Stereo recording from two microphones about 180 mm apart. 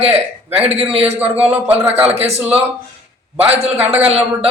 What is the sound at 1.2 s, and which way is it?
Speech, 10° right (ahead or behind).